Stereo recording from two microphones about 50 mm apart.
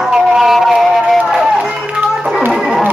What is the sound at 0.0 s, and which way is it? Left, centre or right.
Music, centre.